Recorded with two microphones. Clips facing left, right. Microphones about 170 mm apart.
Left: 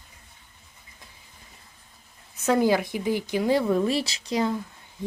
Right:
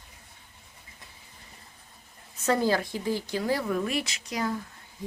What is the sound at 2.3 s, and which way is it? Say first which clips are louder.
Speech: left 4 dB; 15° left (ahead or behind).